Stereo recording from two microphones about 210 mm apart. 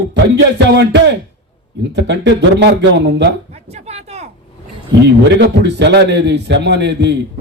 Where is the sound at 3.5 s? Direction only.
30° right (ahead or behind).